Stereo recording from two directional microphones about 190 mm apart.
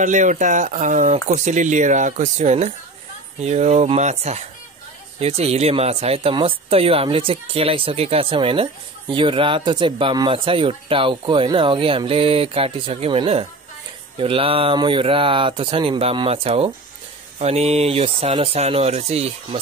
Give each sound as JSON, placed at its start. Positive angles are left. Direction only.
{"t": 0.0, "sound": "speech", "side_deg": -40}